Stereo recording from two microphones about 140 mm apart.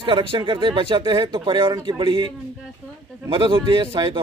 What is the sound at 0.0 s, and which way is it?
Speech, 40° right (ahead or behind).